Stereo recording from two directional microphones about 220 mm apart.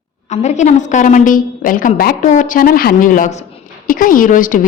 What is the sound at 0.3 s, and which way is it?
A woman's voice, 30° left (ahead or behind).